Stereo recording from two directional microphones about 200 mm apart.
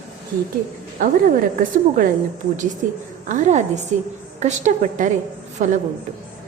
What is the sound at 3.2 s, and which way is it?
A woman's voice, 35° right (ahead or behind).